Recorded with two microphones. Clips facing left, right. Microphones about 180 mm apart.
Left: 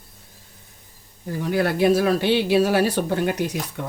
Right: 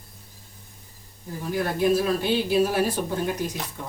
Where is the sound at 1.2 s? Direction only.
75° left (ahead or behind).